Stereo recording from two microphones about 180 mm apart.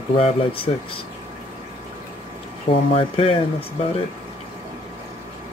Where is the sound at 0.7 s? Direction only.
30° left (ahead or behind).